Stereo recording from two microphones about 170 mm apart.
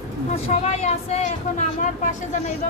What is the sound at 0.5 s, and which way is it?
Speech, 45° left (ahead or behind).